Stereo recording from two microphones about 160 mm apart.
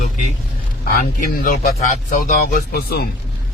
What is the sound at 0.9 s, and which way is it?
Speech, 55° left (ahead or behind).